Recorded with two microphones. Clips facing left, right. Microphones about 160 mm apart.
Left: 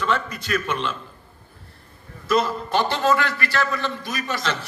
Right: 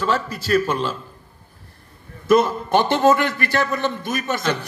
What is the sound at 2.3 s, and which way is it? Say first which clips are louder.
A man's voice: right 5 dB; 50° right (ahead or behind).